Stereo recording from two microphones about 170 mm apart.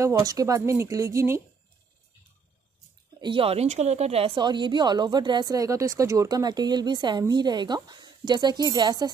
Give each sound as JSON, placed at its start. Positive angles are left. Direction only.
{"t": 0.0, "sound": "speech", "side_deg": -20}
{"t": 3.2, "sound": "speech", "side_deg": -30}